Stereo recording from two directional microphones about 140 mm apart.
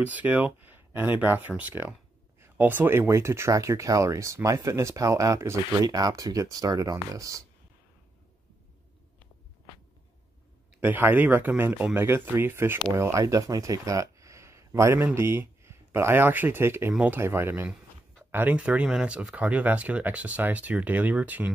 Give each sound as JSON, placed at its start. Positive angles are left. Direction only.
{"t": 0.0, "sound": "speech", "side_deg": -10}
{"t": 10.8, "sound": "speech", "side_deg": -15}